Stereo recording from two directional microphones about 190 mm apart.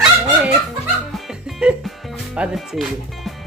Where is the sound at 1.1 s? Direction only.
Centre (ahead or behind).